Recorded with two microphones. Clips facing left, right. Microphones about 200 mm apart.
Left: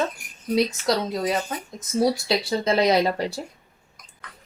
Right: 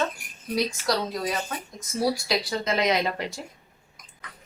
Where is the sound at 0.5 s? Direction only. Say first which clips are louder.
Left 4 dB; 25° left (ahead or behind).